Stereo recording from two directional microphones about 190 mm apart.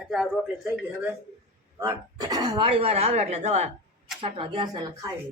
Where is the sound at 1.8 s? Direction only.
20° right (ahead or behind).